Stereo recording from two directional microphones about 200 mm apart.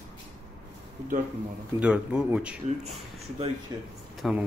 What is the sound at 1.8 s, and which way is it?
Speech, 5° right (ahead or behind).